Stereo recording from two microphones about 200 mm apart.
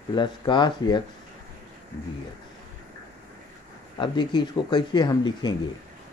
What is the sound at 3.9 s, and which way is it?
Speech, 25° left (ahead or behind).